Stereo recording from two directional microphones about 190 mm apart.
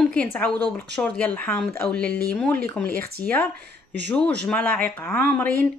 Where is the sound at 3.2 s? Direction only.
45° left (ahead or behind).